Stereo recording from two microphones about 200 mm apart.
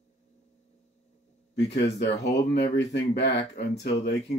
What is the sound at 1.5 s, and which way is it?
Speech, 55° left (ahead or behind).